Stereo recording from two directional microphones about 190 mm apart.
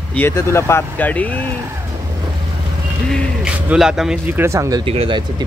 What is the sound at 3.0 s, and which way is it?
Speech, centre (ahead or behind).